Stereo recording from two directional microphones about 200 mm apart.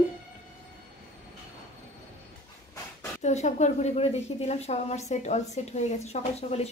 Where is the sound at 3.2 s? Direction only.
35° left (ahead or behind).